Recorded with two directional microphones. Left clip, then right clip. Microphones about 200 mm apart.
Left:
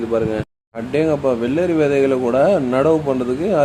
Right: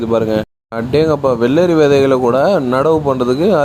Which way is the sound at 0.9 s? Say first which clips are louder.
Right 4 dB; 30° right (ahead or behind).